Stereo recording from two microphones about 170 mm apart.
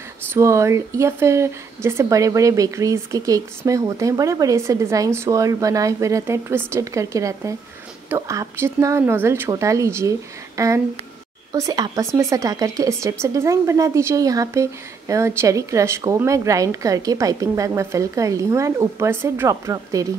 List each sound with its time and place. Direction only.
0.3 s speech: 15° right (ahead or behind)